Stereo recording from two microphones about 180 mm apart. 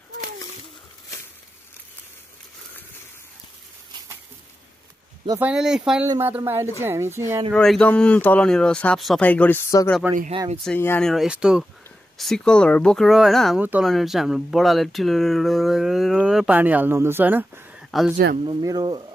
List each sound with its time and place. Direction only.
5.4 s a woman's voice: 5° right (ahead or behind)
7.5 s speech: 5° left (ahead or behind)
10.3 s speech: 30° right (ahead or behind)
10.6 s speech: 10° left (ahead or behind)
18.4 s speech: 25° right (ahead or behind)